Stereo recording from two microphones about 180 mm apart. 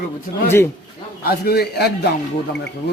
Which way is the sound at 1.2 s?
60° left (ahead or behind).